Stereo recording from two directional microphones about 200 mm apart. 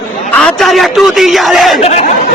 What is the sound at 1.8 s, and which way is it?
Speech, 35° left (ahead or behind).